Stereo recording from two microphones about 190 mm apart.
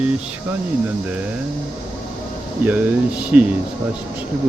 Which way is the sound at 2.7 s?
10° right (ahead or behind).